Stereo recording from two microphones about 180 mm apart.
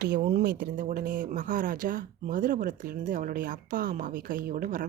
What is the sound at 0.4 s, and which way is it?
Speech, 50° right (ahead or behind).